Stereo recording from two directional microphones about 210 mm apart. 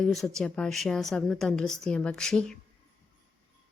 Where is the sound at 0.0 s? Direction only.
Centre (ahead or behind).